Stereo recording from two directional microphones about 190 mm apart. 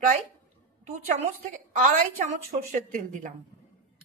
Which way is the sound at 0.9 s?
40° right (ahead or behind).